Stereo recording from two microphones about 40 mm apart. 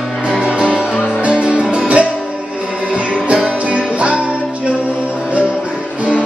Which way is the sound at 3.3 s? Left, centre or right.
Right.